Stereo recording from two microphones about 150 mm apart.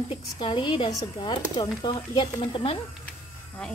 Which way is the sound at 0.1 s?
35° left (ahead or behind).